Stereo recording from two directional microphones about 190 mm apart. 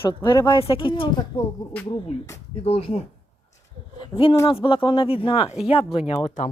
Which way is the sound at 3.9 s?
25° left (ahead or behind).